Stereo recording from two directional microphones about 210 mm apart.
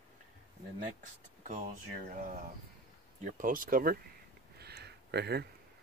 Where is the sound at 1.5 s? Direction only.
35° right (ahead or behind).